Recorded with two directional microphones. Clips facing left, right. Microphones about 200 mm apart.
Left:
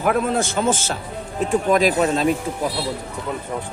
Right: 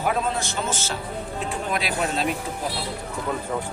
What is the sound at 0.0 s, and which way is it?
Speech, 55° left (ahead or behind).